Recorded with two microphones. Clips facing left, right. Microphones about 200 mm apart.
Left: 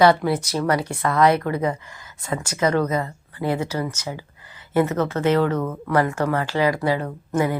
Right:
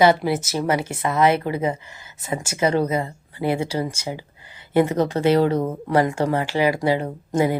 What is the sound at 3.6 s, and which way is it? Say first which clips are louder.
Speech: right 1 dB; 10° right (ahead or behind).